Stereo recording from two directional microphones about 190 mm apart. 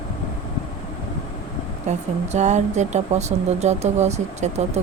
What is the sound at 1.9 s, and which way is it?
Speech, 35° right (ahead or behind).